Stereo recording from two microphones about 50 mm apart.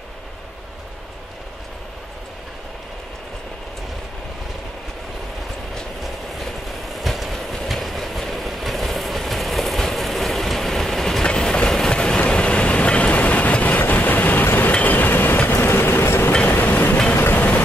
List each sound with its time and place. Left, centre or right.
6.4 s train: centre
12.3 s vehicle: left
16.5 s train: left
17.1 s vehicle: left